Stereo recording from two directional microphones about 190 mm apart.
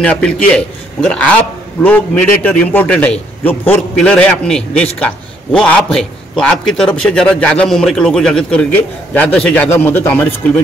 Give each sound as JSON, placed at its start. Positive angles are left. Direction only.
{"t": 0.0, "sound": "a man's voice", "side_deg": 5}